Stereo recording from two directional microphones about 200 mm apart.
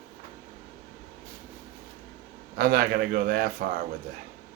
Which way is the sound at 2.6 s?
50° right (ahead or behind).